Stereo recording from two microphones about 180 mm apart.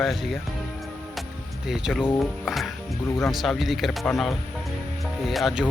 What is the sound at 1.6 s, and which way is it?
Speech, centre (ahead or behind).